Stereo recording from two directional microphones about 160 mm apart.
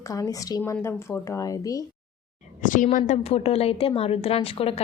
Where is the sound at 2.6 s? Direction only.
55° left (ahead or behind).